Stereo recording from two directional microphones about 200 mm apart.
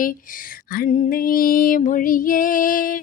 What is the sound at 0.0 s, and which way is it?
Speech, 45° left (ahead or behind).